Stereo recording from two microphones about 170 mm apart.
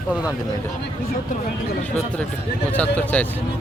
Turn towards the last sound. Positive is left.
turn(degrees=10)  # may be behind; listen again after turning